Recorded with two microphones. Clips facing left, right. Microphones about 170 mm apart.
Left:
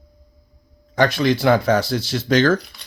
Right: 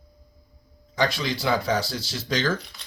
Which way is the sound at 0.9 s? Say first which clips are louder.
Left 8 dB; 55° left (ahead or behind).